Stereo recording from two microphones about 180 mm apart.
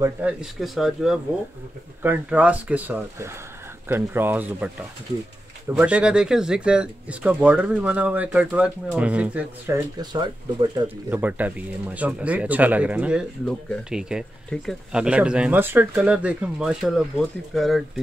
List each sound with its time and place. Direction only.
0.0 s speech: 5° right (ahead or behind)
5.7 s speech: 5° right (ahead or behind)
9.9 s speech: 25° right (ahead or behind)
11.1 s speech: 10° right (ahead or behind)